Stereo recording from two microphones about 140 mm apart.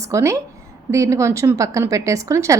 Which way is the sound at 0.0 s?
20° right (ahead or behind).